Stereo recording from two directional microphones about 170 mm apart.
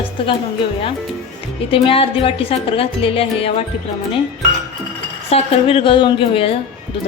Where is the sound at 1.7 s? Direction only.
30° left (ahead or behind).